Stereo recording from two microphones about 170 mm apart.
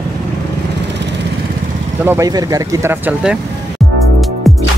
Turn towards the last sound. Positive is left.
turn(degrees=0)  # may be behind; listen again after turning